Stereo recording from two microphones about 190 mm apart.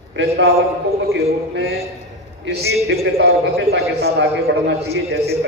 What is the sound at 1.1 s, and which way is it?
A man's voice, 70° right (ahead or behind).